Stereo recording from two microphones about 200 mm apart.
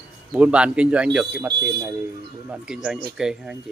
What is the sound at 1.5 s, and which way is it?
Speech, 55° right (ahead or behind).